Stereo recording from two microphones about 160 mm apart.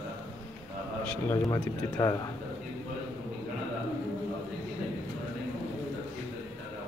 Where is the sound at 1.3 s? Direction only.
20° left (ahead or behind).